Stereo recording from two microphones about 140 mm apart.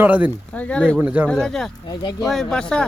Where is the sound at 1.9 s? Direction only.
30° left (ahead or behind).